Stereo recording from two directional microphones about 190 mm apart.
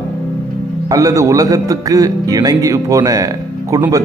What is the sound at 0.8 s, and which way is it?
Speech, 20° right (ahead or behind).